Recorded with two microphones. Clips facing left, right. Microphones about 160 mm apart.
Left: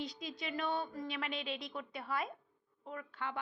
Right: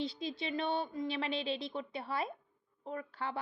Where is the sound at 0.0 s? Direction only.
30° right (ahead or behind).